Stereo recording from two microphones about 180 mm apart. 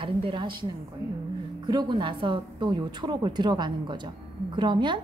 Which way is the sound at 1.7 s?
25° right (ahead or behind).